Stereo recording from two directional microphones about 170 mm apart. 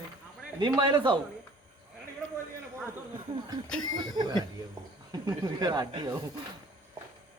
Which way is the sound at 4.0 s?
25° right (ahead or behind).